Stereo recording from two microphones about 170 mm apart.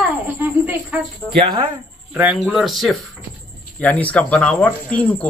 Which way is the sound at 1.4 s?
30° right (ahead or behind).